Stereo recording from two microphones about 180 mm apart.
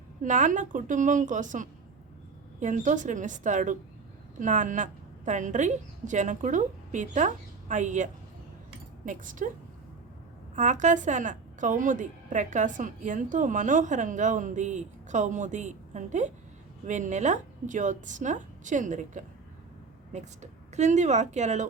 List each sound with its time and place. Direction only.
0.2 s a woman's voice: 45° right (ahead or behind)
10.5 s a woman's voice: 40° right (ahead or behind)